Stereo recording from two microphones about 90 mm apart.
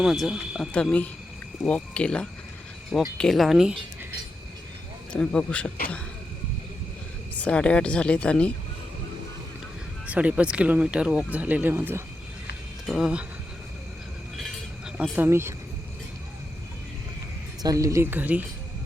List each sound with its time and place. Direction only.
0.0 s speech: 5° right (ahead or behind)
0.7 s speech: 15° left (ahead or behind)
3.2 s speech: centre (ahead or behind)
5.1 s speech: 10° left (ahead or behind)
7.3 s speech: 15° left (ahead or behind)
10.1 s speech: 15° right (ahead or behind)
12.9 s speech: 10° right (ahead or behind)
15.1 s speech: 25° right (ahead or behind)
17.6 s speech: 40° right (ahead or behind)
18.0 s speech: 20° right (ahead or behind)